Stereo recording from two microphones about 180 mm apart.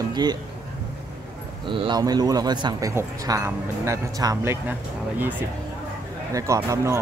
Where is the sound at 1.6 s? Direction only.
25° right (ahead or behind); by 5.3 s 10° right (ahead or behind).